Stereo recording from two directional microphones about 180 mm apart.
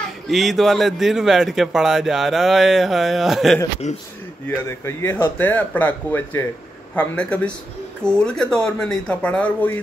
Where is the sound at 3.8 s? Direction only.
40° left (ahead or behind).